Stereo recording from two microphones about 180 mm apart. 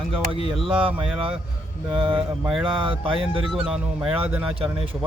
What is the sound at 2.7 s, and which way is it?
Speech, 30° right (ahead or behind).